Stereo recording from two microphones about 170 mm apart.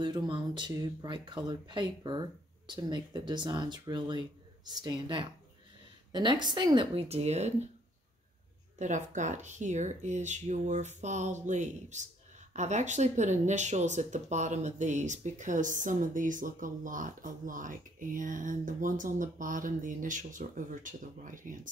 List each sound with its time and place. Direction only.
0.0 s speech: 25° right (ahead or behind)
8.7 s speech: 45° right (ahead or behind)